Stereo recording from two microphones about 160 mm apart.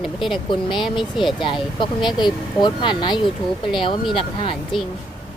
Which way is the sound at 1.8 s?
30° left (ahead or behind).